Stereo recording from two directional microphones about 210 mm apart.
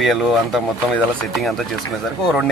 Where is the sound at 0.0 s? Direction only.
Centre (ahead or behind).